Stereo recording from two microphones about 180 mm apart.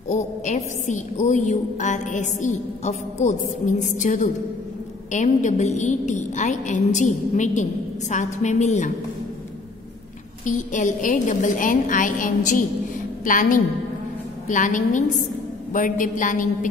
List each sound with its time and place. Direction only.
0.1 s a woman's voice: 40° left (ahead or behind)
10.4 s a woman's voice: 45° left (ahead or behind)